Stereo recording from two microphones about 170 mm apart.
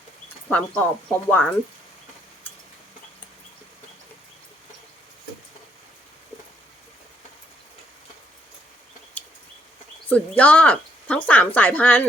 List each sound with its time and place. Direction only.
0.4 s speech: 10° left (ahead or behind)
9.2 s a sound: 10° left (ahead or behind)
10.1 s speech: 10° left (ahead or behind)